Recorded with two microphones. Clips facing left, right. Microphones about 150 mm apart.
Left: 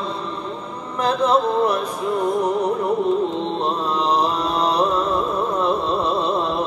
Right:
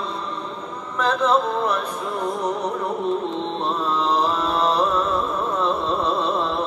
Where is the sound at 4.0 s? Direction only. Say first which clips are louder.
Left 2 dB; 15° left (ahead or behind).